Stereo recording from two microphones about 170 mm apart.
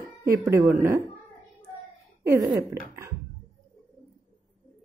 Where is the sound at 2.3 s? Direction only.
15° right (ahead or behind).